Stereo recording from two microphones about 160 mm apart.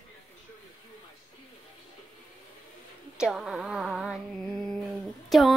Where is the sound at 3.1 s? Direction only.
5° right (ahead or behind).